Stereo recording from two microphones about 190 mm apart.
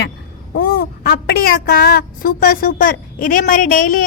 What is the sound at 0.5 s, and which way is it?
A woman's voice, 50° left (ahead or behind).